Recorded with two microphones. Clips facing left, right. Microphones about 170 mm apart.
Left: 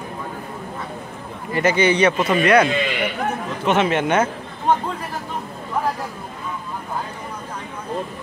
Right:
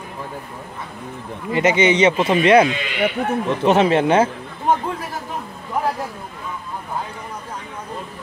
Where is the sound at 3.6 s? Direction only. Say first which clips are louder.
Right 3 dB; 35° right (ahead or behind).